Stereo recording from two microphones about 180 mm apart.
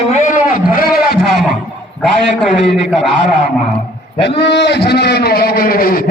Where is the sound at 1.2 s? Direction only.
Centre (ahead or behind).